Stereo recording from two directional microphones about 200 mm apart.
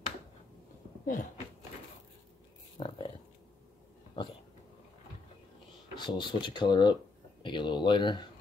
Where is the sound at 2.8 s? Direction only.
25° left (ahead or behind).